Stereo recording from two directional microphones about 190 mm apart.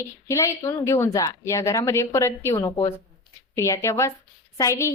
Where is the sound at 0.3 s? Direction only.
15° left (ahead or behind).